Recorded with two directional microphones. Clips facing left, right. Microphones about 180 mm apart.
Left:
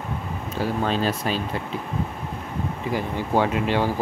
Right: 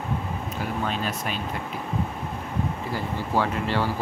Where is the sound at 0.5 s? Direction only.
30° left (ahead or behind).